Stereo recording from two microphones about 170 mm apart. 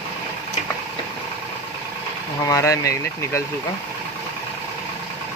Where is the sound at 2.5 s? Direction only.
20° left (ahead or behind).